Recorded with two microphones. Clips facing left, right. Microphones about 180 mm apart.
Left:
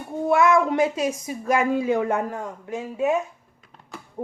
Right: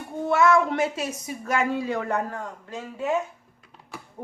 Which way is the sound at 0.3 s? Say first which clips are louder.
Left 1 dB; 15° left (ahead or behind).